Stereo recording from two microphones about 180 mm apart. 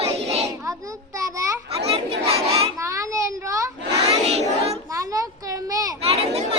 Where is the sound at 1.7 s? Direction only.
35° right (ahead or behind).